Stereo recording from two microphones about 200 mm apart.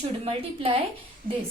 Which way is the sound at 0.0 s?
30° right (ahead or behind).